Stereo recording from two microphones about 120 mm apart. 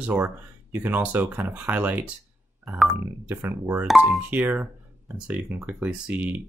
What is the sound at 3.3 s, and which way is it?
Speech, 20° right (ahead or behind).